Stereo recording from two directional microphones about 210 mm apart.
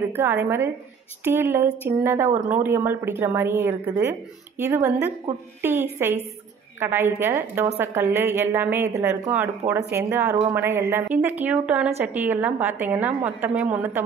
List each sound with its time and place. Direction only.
0.1 s a woman's voice: 10° right (ahead or behind)